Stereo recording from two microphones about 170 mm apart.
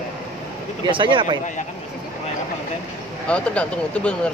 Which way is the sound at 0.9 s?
30° right (ahead or behind).